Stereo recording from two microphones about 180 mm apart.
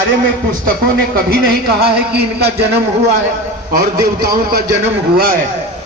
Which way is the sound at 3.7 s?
55° right (ahead or behind).